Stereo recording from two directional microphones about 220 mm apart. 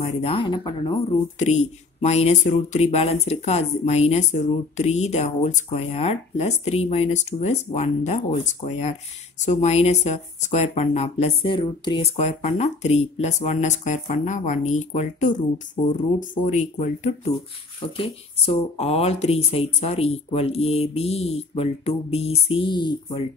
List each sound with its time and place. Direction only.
0.0 s speech: 25° left (ahead or behind)
1.4 s speech: 30° left (ahead or behind)